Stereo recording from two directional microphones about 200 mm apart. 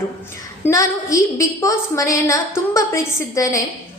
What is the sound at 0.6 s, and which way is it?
A woman's voice, 15° left (ahead or behind).